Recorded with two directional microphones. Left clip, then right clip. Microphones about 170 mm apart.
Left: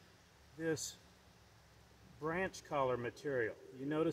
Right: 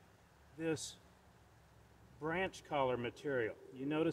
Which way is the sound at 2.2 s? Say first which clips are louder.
Even; 25° right (ahead or behind).